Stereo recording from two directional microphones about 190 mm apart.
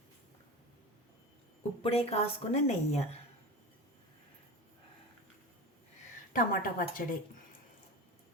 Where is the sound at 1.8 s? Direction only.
30° left (ahead or behind).